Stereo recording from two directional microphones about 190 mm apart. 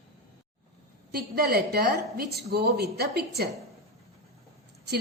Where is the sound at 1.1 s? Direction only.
55° right (ahead or behind).